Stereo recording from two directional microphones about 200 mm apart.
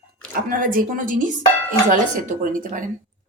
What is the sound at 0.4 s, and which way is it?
Speech, 45° right (ahead or behind).